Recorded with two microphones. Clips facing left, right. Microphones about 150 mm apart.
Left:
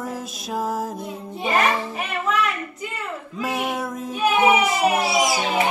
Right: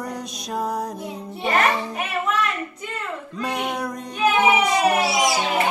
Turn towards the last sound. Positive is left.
turn(degrees=5)  # may be behind; listen again after turning